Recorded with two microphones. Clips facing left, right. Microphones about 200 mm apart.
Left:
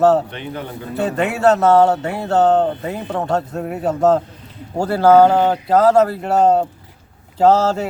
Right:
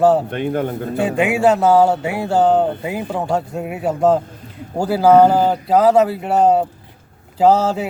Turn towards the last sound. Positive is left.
turn(degrees=-10)  # may be behind; listen again after turning